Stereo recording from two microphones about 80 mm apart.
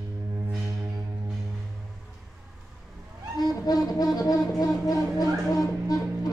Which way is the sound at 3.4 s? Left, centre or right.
Left.